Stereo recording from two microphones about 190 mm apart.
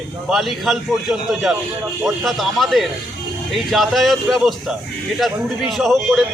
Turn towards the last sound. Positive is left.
turn(degrees=0)  # may be behind; listen again after turning